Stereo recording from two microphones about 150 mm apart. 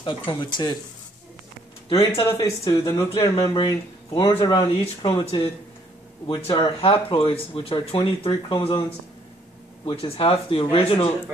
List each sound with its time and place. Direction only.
0.0 s speech: 30° left (ahead or behind)
2.1 s speech: 20° left (ahead or behind)
9.8 s speech: 40° left (ahead or behind)